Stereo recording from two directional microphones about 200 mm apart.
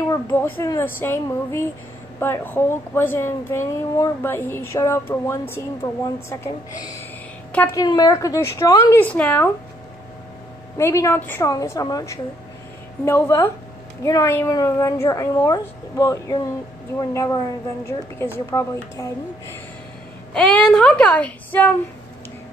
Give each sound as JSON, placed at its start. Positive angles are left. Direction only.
{"t": 0.1, "sound": "a woman's voice", "side_deg": 15}
{"t": 7.5, "sound": "a woman's voice", "side_deg": 15}
{"t": 10.8, "sound": "a woman's voice", "side_deg": 15}
{"t": 20.3, "sound": "a woman's voice", "side_deg": 5}